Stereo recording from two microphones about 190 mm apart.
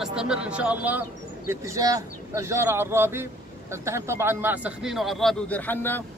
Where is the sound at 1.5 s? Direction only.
15° right (ahead or behind).